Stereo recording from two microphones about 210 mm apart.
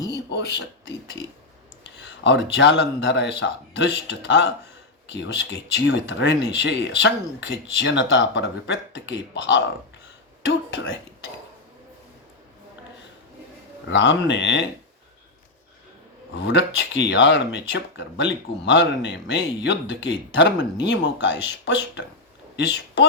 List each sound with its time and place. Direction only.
0.1 s a sound: 55° left (ahead or behind)
1.8 s a sound: 55° left (ahead or behind)
2.6 s speech: 55° left (ahead or behind)
10.7 s speech: 55° left (ahead or behind)
13.9 s speech: 60° left (ahead or behind)
16.5 s speech: 60° left (ahead or behind)
22.5 s a woman's voice: 55° left (ahead or behind)